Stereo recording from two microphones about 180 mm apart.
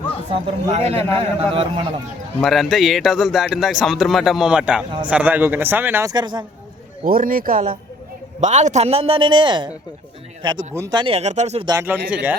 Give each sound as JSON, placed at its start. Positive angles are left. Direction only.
{"t": 0.7, "sound": "a man's voice", "side_deg": -35}
{"t": 0.9, "sound": "a man's voice", "side_deg": 10}
{"t": 1.2, "sound": "a man's voice", "side_deg": -30}
{"t": 2.4, "sound": "a man's voice", "side_deg": 0}
{"t": 7.0, "sound": "a man's voice", "side_deg": -50}
{"t": 11.6, "sound": "speech", "side_deg": -20}
{"t": 11.9, "sound": "speech", "side_deg": -10}